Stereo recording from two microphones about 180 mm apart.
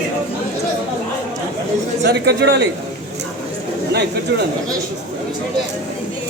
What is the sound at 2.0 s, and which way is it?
Speech, 65° right (ahead or behind).